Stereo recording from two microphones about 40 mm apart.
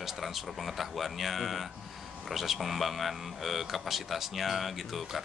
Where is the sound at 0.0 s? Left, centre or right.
Centre.